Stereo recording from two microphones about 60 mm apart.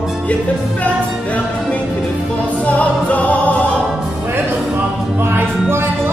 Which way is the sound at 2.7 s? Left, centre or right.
Left.